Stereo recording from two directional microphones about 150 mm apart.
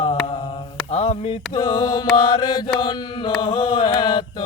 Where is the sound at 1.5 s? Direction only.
30° left (ahead or behind).